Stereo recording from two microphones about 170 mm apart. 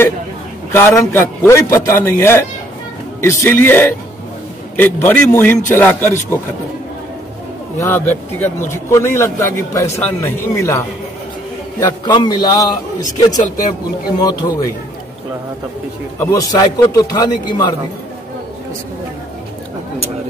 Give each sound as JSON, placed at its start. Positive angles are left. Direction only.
{"t": 0.7, "sound": "a man's voice", "side_deg": 15}
{"t": 7.8, "sound": "a man's voice", "side_deg": 10}
{"t": 12.0, "sound": "a man's voice", "side_deg": 25}
{"t": 16.2, "sound": "a man's voice", "side_deg": 20}